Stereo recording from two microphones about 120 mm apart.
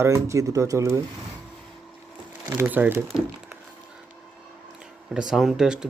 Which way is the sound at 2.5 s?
15° right (ahead or behind).